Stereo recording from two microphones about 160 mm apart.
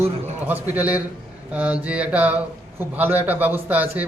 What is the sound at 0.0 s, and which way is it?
A man's voice, 10° right (ahead or behind).